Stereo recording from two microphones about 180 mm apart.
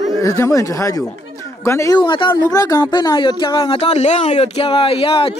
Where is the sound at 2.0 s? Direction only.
25° left (ahead or behind).